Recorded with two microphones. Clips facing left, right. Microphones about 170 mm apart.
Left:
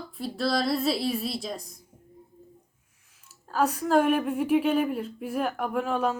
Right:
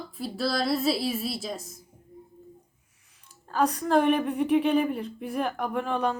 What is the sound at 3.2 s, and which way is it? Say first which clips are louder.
Speech: even; 5° left (ahead or behind).